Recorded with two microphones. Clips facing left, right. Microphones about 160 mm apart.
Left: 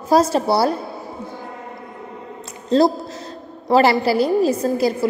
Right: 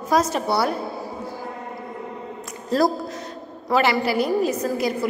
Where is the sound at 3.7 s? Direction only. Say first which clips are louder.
Left 5 dB; 35° left (ahead or behind).